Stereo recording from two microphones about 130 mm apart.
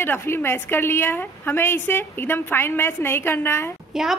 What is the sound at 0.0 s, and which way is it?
A woman's voice, 20° left (ahead or behind).